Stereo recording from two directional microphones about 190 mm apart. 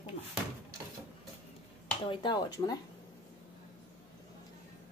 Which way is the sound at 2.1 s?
25° left (ahead or behind).